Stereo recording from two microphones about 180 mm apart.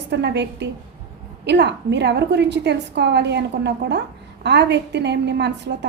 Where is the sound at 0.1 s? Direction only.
70° right (ahead or behind).